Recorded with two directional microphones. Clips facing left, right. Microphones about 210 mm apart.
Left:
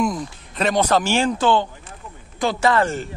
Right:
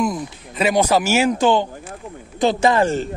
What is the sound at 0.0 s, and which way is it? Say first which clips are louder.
Speech: right 1 dB; 5° right (ahead or behind).